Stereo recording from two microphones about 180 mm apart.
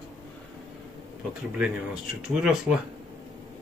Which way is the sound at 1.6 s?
5° right (ahead or behind).